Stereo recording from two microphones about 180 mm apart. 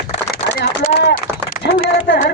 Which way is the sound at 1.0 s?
70° left (ahead or behind).